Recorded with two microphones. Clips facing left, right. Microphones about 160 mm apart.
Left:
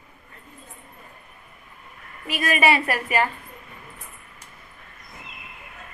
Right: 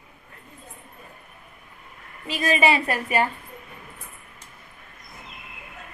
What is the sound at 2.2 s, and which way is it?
A woman's voice, 25° right (ahead or behind).